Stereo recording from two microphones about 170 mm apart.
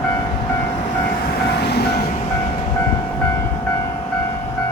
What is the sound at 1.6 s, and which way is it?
Train, 75° left (ahead or behind).